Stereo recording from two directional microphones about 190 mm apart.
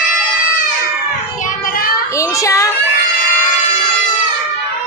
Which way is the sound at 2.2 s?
15° left (ahead or behind).